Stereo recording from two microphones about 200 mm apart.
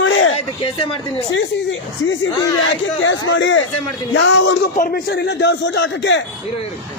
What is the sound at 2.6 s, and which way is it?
A man's voice, 70° left (ahead or behind).